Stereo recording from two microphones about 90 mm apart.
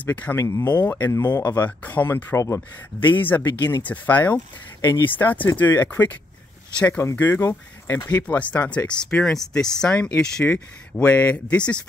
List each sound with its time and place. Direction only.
0.0 s speech: 15° left (ahead or behind)
0.4 s speech: 35° left (ahead or behind)
0.7 s speech: 20° left (ahead or behind)
1.1 s speech: 45° left (ahead or behind)
1.4 s speech: 25° left (ahead or behind)
8.1 s speech: 15° left (ahead or behind)